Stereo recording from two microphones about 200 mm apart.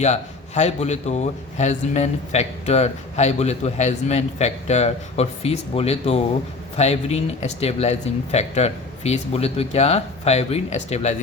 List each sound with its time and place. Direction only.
0.0 s a man's voice: 35° left (ahead or behind)